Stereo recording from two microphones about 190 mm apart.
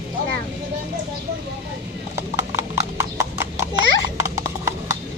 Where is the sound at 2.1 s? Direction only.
15° right (ahead or behind).